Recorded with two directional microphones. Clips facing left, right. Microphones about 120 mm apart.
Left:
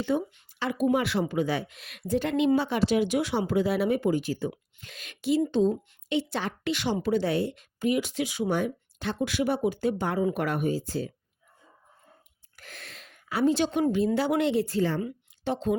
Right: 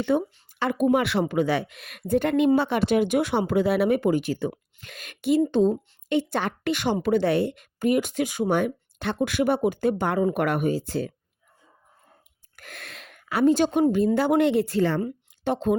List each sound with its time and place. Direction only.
0.0 s a woman's voice: 65° right (ahead or behind)
0.6 s speech: 50° right (ahead or behind)
0.9 s a woman's voice: 70° right (ahead or behind)
4.8 s a woman's voice: 55° right (ahead or behind)
12.5 s gasp: 60° right (ahead or behind)
13.9 s a woman's voice: 50° right (ahead or behind); by 15.0 s 65° right (ahead or behind)
15.4 s speech: 55° right (ahead or behind)